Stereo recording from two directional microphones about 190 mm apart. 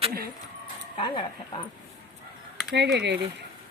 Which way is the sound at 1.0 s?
25° left (ahead or behind).